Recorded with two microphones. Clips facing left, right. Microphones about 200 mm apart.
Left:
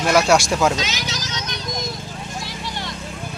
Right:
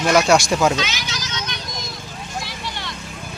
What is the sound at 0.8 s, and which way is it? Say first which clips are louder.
Vehicle: even; 40° left (ahead or behind).